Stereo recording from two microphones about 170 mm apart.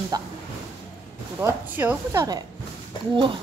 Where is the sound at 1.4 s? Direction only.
15° right (ahead or behind).